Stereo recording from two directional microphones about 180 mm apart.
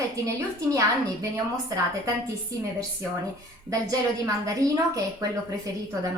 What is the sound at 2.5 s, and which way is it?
Speech, 20° right (ahead or behind).